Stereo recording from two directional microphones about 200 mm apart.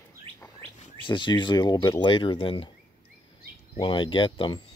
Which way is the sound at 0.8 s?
25° left (ahead or behind).